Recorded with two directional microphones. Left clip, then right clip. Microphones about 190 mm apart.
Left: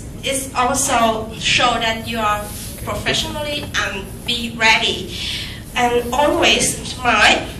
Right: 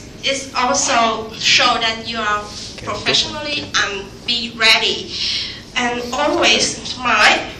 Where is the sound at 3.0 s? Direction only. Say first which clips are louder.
Right 3 dB; 15° left (ahead or behind).